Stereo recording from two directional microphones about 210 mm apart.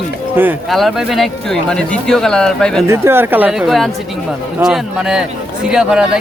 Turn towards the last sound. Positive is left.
turn(degrees=-5)  # may be behind; listen again after turning